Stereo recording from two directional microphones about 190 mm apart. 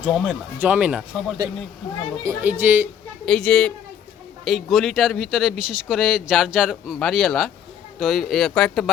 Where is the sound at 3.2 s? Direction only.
5° left (ahead or behind).